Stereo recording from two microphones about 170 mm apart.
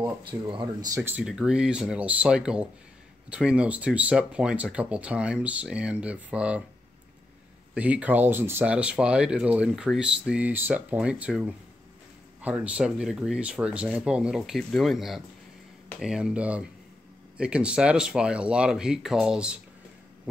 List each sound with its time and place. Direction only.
0.3 s speech: 30° right (ahead or behind)
0.9 s speech: 10° right (ahead or behind)
7.7 s speech: 5° right (ahead or behind)